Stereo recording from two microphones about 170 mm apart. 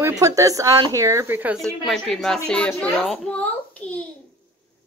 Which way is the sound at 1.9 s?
Centre (ahead or behind).